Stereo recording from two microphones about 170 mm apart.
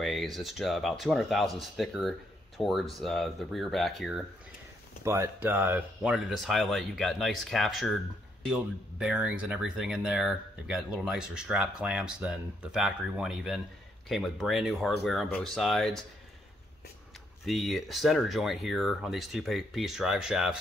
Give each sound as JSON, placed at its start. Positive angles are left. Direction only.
{"t": 0.0, "sound": "speech", "side_deg": 0}
{"t": 5.0, "sound": "speech", "side_deg": -15}
{"t": 17.5, "sound": "speech", "side_deg": 0}